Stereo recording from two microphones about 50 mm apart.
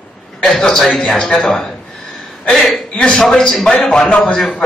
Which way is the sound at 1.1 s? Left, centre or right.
Centre.